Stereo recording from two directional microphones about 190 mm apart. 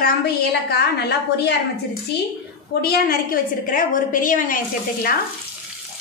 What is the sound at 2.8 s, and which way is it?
A woman's voice, 55° left (ahead or behind).